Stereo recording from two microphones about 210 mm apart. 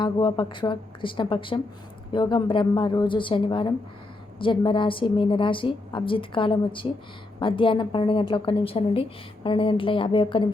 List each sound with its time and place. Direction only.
0.0 s a woman's voice: 20° left (ahead or behind)